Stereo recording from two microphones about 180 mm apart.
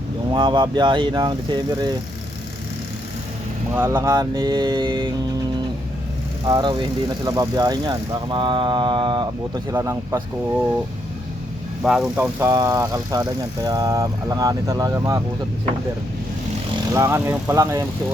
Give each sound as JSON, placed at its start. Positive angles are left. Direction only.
{"t": 0.3, "sound": "speech", "side_deg": -25}
{"t": 3.8, "sound": "speech", "side_deg": -15}
{"t": 6.5, "sound": "speech", "side_deg": -25}
{"t": 11.8, "sound": "speech", "side_deg": -5}
{"t": 12.4, "sound": "speech", "side_deg": -15}
{"t": 16.9, "sound": "speech", "side_deg": -15}